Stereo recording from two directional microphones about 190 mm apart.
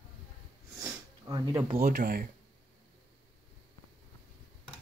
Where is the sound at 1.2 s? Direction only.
20° right (ahead or behind).